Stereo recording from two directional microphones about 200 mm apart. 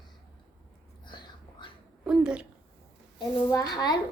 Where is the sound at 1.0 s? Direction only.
20° left (ahead or behind).